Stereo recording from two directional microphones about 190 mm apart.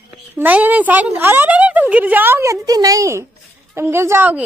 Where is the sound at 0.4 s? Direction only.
10° right (ahead or behind).